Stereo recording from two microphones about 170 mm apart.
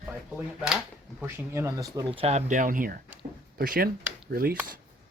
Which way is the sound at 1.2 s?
15° right (ahead or behind).